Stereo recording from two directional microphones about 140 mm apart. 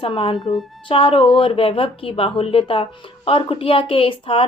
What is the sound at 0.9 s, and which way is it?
Speech, 40° left (ahead or behind).